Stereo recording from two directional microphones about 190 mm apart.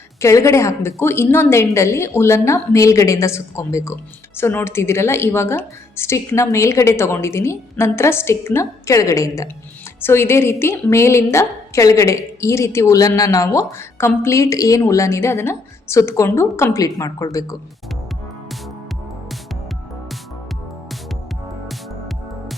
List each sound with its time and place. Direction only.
0.2 s a woman's voice: 15° left (ahead or behind)